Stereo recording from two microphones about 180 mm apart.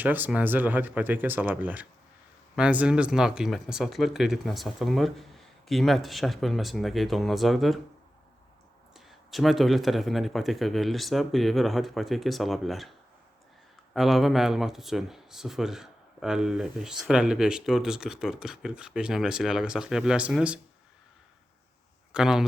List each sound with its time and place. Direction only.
0.0 s speech: 10° right (ahead or behind)
9.0 s speech: centre (ahead or behind)
13.9 s speech: centre (ahead or behind)
22.1 s speech: 5° right (ahead or behind)